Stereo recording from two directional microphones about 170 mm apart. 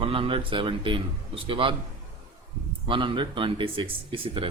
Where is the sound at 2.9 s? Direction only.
30° right (ahead or behind).